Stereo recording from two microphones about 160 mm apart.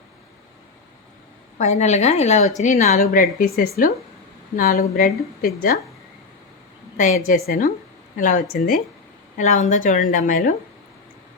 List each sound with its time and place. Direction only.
1.5 s speech: 45° left (ahead or behind); by 5.7 s 60° left (ahead or behind)
6.9 s speech: 55° left (ahead or behind)
9.4 s speech: 50° left (ahead or behind)